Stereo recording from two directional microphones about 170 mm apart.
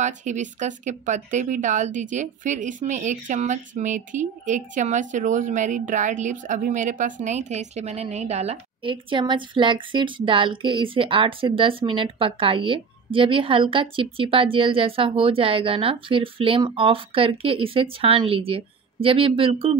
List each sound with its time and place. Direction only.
0.0 s speech: 45° right (ahead or behind)